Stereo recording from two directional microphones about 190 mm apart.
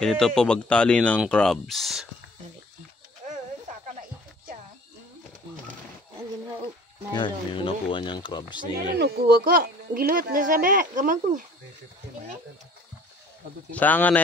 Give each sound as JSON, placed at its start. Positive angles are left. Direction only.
{"t": 0.0, "sound": "speech", "side_deg": 5}
{"t": 7.2, "sound": "speech", "side_deg": 25}
{"t": 8.9, "sound": "speech", "side_deg": -55}
{"t": 13.7, "sound": "speech", "side_deg": 10}